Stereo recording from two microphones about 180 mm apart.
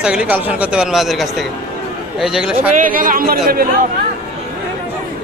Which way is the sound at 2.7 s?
50° right (ahead or behind).